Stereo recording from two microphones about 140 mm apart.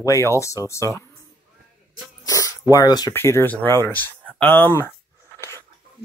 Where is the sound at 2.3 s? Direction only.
25° left (ahead or behind).